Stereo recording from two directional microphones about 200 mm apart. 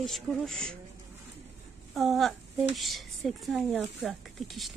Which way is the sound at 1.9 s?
Centre (ahead or behind).